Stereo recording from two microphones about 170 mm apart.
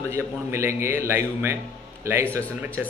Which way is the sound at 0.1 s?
15° right (ahead or behind).